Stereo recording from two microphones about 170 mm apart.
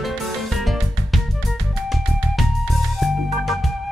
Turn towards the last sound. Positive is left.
turn(degrees=0)  # may be behind; listen again after turning